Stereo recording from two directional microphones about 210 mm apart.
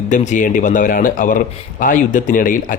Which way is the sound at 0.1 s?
35° left (ahead or behind).